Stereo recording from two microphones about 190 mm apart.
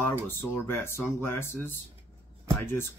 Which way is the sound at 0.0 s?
10° left (ahead or behind).